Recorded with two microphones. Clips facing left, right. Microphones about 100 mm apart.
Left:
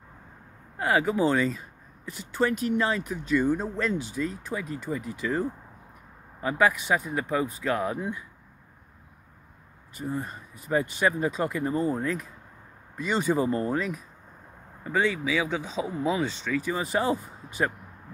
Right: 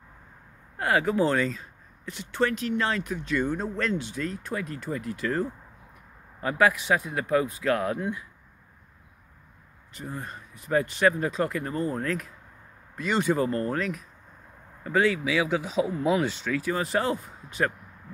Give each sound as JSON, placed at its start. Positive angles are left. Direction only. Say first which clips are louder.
{"t": 0.7, "sound": "speech", "louder": "even", "side_deg": 5}
{"t": 6.6, "sound": "speech", "louder": "right 1 dB", "side_deg": 0}
{"t": 9.9, "sound": "speech", "louder": "left 4 dB", "side_deg": 5}